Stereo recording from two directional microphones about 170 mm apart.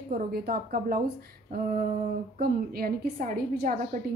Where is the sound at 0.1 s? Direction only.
60° right (ahead or behind).